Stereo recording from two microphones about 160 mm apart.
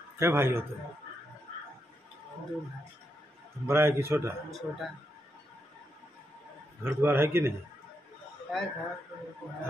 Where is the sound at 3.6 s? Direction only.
15° right (ahead or behind).